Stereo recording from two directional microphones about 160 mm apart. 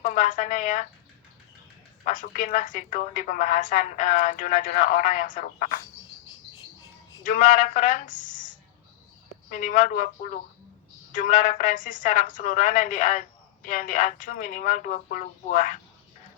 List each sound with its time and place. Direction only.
0.0 s speech: 55° left (ahead or behind)
2.0 s a woman's voice: 55° left (ahead or behind)
7.3 s a woman's voice: 50° left (ahead or behind)